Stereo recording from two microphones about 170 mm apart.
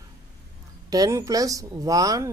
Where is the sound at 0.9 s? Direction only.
20° right (ahead or behind).